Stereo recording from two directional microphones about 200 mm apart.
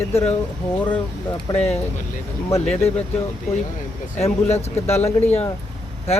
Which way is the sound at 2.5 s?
10° left (ahead or behind).